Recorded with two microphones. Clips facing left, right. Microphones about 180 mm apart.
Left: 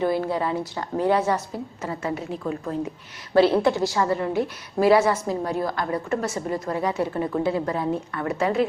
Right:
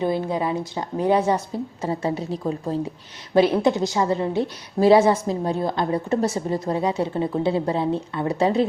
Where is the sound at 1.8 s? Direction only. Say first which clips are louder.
Right 4 dB; 30° right (ahead or behind).